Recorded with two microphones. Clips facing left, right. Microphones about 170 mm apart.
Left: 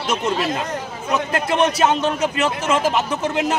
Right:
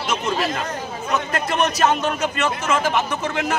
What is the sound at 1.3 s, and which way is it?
A man's voice, 30° left (ahead or behind).